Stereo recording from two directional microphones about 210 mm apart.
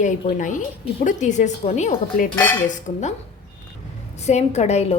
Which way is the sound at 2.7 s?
35° left (ahead or behind).